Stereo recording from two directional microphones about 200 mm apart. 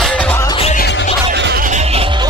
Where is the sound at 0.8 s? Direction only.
60° left (ahead or behind).